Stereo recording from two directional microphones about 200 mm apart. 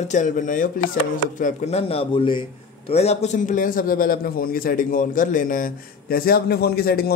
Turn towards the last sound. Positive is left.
turn(degrees=50)  # may be behind; listen again after turning